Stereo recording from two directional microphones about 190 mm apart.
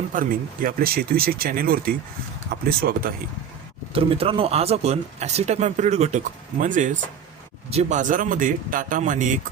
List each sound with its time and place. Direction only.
0.1 s speech: 50° right (ahead or behind)
3.9 s speech: 30° right (ahead or behind)